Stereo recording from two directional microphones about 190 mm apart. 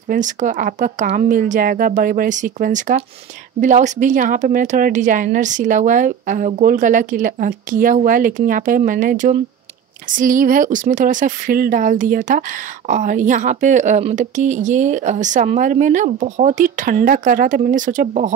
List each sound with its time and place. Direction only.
0.1 s a woman's voice: 40° right (ahead or behind)